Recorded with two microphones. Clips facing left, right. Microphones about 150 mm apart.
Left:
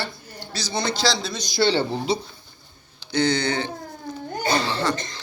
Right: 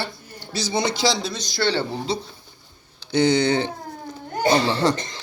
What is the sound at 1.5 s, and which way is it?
Speech, 15° left (ahead or behind).